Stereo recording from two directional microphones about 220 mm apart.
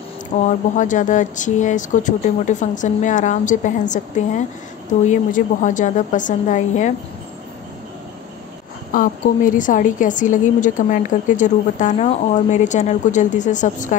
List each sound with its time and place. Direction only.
0.4 s a woman's voice: 35° left (ahead or behind)
8.9 s a woman's voice: 40° left (ahead or behind)